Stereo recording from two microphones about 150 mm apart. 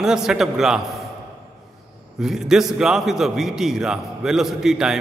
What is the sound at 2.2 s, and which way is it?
A man's voice, 5° right (ahead or behind).